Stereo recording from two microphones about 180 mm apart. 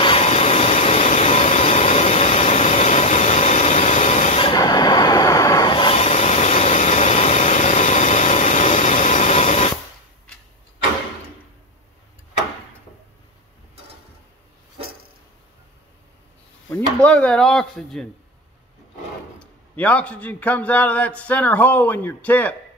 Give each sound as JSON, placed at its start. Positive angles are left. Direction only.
{"t": 0.0, "sound": "vehicle", "side_deg": 35}
{"t": 4.4, "sound": "train", "side_deg": 25}
{"t": 17.0, "sound": "speech", "side_deg": 5}
{"t": 19.4, "sound": "a man's voice", "side_deg": 10}